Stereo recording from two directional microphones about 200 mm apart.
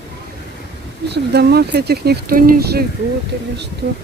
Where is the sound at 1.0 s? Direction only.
55° right (ahead or behind).